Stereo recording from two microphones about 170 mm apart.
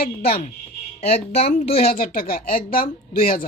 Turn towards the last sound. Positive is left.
turn(degrees=55)  # may be behind; listen again after turning